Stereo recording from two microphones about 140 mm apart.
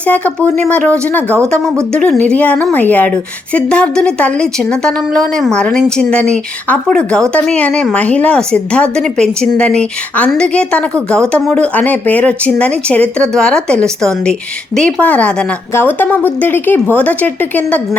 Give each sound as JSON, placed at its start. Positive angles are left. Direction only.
{"t": 0.1, "sound": "a woman's voice", "side_deg": 10}
{"t": 1.5, "sound": "speech", "side_deg": -20}
{"t": 1.9, "sound": "a woman's voice", "side_deg": 5}